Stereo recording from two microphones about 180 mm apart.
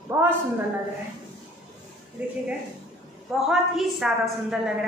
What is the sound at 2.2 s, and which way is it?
A woman's voice, 5° right (ahead or behind).